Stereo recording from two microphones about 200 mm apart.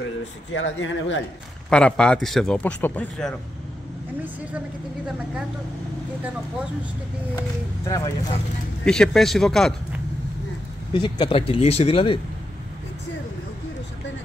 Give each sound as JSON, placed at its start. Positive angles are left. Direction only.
{"t": 0.5, "sound": "speech", "side_deg": 70}
{"t": 1.7, "sound": "a man's voice", "side_deg": 5}
{"t": 7.3, "sound": "speech", "side_deg": 15}
{"t": 8.8, "sound": "a man's voice", "side_deg": 5}
{"t": 10.9, "sound": "speech", "side_deg": 25}